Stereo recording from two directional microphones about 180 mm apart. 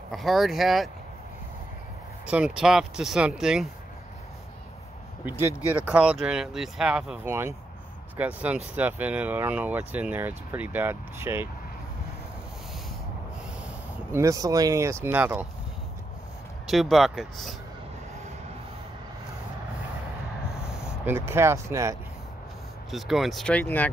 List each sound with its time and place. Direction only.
0.1 s speech: centre (ahead or behind)
2.2 s speech: 5° right (ahead or behind)
5.2 s speech: 10° right (ahead or behind)
14.1 s speech: 20° right (ahead or behind)
16.6 s speech: centre (ahead or behind)
21.0 s speech: 15° right (ahead or behind)
22.8 s speech: centre (ahead or behind)